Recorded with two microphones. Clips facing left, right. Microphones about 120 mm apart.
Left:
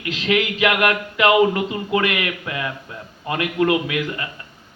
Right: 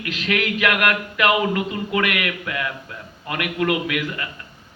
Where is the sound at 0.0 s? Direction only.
25° left (ahead or behind).